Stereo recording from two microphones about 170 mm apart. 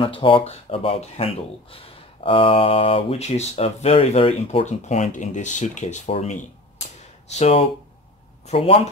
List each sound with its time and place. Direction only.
0.0 s speech: 30° left (ahead or behind)